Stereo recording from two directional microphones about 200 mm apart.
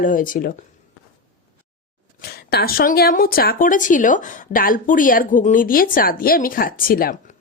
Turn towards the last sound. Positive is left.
turn(degrees=45)  # may be behind; listen again after turning